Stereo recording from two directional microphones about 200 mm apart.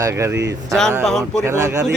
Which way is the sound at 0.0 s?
15° right (ahead or behind).